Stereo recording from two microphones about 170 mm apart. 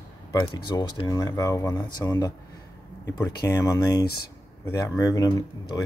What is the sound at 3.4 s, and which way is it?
Speech, 20° left (ahead or behind).